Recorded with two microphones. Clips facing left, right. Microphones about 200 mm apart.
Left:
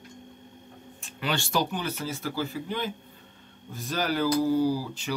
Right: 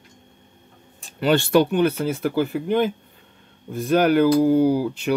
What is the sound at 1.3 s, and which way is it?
Speech, 60° right (ahead or behind).